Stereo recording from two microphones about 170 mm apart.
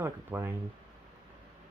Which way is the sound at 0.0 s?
15° right (ahead or behind).